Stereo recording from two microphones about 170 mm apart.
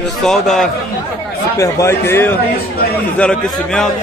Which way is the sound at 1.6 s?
15° left (ahead or behind).